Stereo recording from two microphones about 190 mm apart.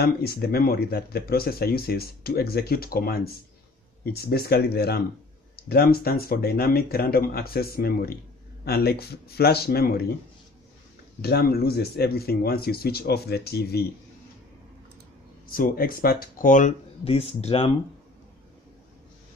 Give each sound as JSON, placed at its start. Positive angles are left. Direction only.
{"t": 0.0, "sound": "speech", "side_deg": 55}
{"t": 11.1, "sound": "speech", "side_deg": 55}
{"t": 15.5, "sound": "speech", "side_deg": 50}